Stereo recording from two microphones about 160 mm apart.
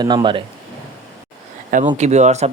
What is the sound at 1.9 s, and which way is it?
Speech, 45° right (ahead or behind).